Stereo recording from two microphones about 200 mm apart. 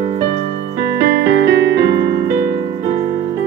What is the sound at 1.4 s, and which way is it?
Music, 55° right (ahead or behind).